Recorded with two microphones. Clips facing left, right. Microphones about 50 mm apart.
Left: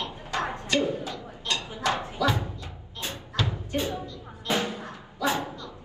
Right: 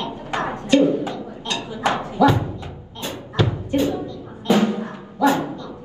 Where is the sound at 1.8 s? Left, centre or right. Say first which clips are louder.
Right 10 dB; right.